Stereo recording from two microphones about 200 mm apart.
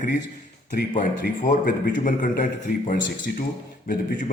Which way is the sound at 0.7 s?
40° left (ahead or behind).